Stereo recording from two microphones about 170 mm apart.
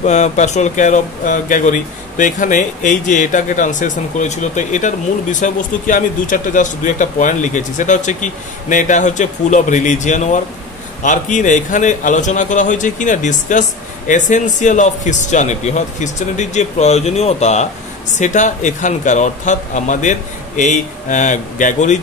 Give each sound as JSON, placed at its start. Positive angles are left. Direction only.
{"t": 0.0, "sound": "speech", "side_deg": 45}